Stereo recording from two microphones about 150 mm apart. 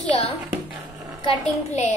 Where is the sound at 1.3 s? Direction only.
50° left (ahead or behind).